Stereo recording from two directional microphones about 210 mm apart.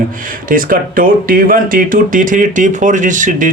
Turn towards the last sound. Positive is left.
turn(degrees=-40)  # may be behind; listen again after turning